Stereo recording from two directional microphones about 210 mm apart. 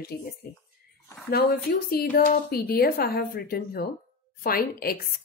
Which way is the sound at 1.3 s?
45° left (ahead or behind).